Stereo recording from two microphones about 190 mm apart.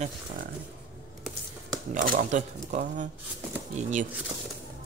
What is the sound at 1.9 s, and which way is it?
Speech, 45° right (ahead or behind).